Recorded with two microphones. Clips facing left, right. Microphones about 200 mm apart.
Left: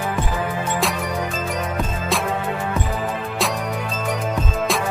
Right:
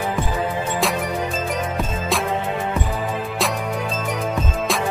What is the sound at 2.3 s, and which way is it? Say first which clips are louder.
Music: right 1 dB; 15° right (ahead or behind).